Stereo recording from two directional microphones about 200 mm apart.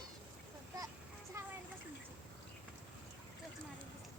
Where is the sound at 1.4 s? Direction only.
15° right (ahead or behind).